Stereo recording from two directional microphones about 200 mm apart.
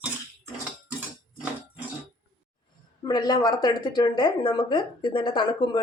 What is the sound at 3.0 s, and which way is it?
A woman's voice, 20° left (ahead or behind).